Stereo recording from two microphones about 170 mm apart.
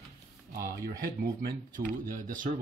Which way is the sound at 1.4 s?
55° right (ahead or behind).